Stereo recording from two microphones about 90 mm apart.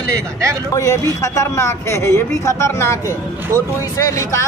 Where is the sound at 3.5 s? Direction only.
35° right (ahead or behind).